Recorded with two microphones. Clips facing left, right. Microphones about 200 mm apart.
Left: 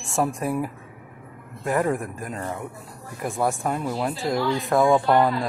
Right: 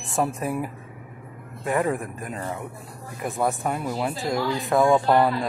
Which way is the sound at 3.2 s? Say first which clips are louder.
Even; centre (ahead or behind).